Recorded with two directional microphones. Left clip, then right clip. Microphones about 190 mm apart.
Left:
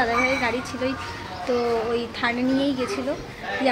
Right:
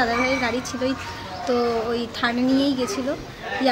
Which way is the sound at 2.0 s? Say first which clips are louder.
Right 1 dB; 10° right (ahead or behind).